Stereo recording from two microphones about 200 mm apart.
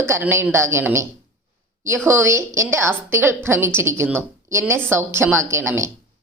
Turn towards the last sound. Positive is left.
turn(degrees=-15)  # may be behind; listen again after turning